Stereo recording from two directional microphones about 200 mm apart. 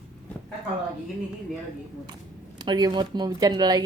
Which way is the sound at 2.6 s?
20° right (ahead or behind).